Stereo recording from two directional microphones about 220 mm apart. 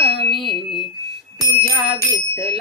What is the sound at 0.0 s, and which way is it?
Music, 50° left (ahead or behind).